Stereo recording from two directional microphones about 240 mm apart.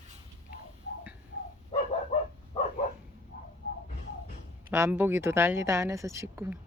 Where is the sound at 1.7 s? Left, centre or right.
Left.